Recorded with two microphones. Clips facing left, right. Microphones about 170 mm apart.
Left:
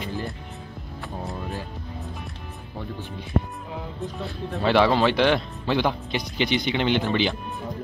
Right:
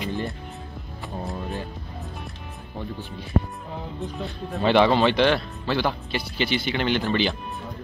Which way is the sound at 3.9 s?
Centre (ahead or behind).